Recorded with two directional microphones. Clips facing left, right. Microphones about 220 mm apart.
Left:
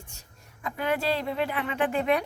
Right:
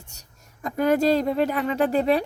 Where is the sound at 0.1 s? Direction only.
40° right (ahead or behind).